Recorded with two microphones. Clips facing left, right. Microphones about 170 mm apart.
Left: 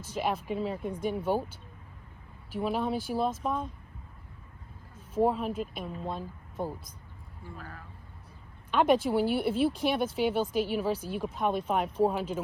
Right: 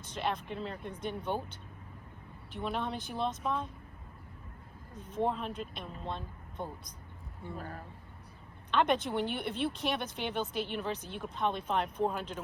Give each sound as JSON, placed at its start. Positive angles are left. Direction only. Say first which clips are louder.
{"t": 0.0, "sound": "speech", "louder": "left 4 dB", "side_deg": 5}
{"t": 2.5, "sound": "speech", "louder": "left 6 dB", "side_deg": 5}
{"t": 5.0, "sound": "speech", "louder": "left 6 dB", "side_deg": 5}
{"t": 7.5, "sound": "speech", "louder": "right 3 dB", "side_deg": -40}
{"t": 8.7, "sound": "speech", "louder": "left 5 dB", "side_deg": 5}